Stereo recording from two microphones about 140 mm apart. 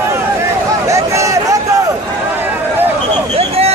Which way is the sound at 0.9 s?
20° right (ahead or behind).